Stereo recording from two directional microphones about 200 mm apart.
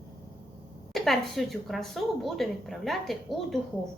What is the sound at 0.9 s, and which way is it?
A woman's voice, centre (ahead or behind).